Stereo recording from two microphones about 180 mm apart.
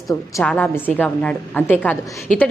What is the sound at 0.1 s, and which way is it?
A woman's voice, 15° left (ahead or behind).